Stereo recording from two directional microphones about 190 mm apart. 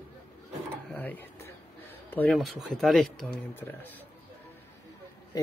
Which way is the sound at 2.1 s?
5° left (ahead or behind).